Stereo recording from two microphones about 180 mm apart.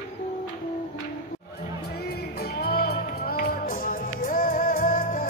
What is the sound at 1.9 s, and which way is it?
Music, 60° left (ahead or behind).